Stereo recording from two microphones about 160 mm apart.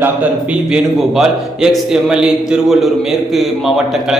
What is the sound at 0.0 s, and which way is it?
A man's voice, 5° right (ahead or behind).